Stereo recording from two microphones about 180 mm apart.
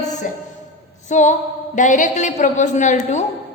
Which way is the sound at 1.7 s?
45° left (ahead or behind).